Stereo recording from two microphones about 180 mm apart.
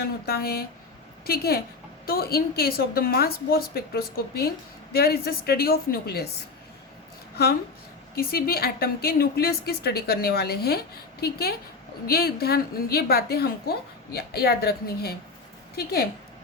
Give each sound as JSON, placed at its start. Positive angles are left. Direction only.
{"t": 0.3, "sound": "a woman's voice", "side_deg": 60}
{"t": 8.1, "sound": "a woman's voice", "side_deg": 55}